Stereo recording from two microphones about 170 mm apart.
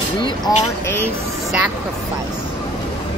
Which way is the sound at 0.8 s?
15° left (ahead or behind).